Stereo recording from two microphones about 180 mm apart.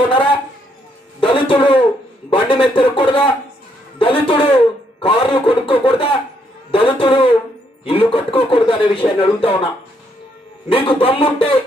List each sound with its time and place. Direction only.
0.1 s a sound: 30° left (ahead or behind)
2.2 s speech: 30° left (ahead or behind)
10.7 s speech: 30° left (ahead or behind)